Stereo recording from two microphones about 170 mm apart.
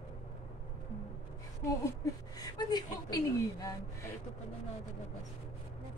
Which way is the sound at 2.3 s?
25° left (ahead or behind).